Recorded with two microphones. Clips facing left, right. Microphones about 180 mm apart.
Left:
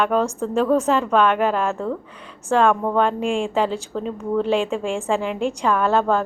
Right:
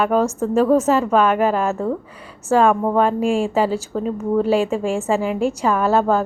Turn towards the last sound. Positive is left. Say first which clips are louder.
# right 2 dB
turn(degrees=-5)  # may be behind; listen again after turning